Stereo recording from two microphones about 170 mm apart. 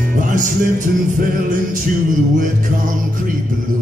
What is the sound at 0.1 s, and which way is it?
Music, 50° right (ahead or behind).